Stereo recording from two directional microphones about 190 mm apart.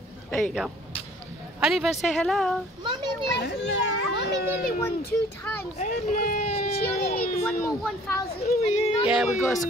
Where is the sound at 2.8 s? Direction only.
25° right (ahead or behind).